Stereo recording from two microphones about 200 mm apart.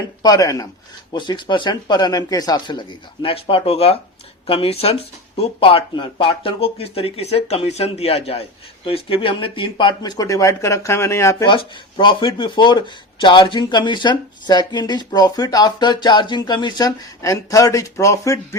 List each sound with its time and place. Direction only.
0.2 s speech: 20° left (ahead or behind)